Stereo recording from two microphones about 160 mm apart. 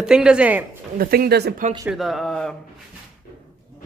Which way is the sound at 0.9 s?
70° right (ahead or behind).